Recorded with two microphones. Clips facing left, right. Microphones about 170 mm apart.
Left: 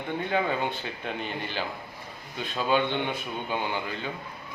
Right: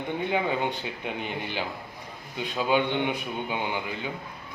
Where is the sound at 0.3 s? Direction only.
15° right (ahead or behind).